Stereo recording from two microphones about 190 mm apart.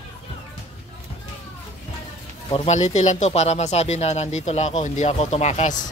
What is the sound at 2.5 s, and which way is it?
A man's voice, 35° left (ahead or behind).